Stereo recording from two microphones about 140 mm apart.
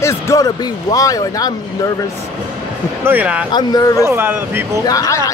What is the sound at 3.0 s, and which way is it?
Speech, 15° right (ahead or behind).